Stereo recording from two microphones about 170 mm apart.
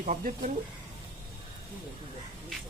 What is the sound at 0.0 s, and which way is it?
Speech, 45° right (ahead or behind).